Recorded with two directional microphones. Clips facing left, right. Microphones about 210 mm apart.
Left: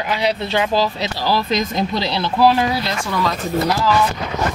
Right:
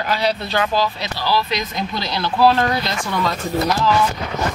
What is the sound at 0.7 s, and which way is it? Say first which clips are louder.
Speech: left 2 dB; 35° left (ahead or behind).